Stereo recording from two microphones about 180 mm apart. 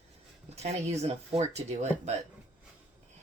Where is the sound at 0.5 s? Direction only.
35° right (ahead or behind).